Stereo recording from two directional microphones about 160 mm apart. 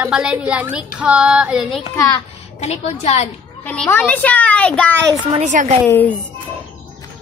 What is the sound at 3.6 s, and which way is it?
A child's voice, 10° left (ahead or behind).